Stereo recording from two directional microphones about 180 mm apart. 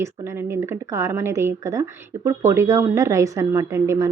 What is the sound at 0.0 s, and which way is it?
Speech, 15° right (ahead or behind).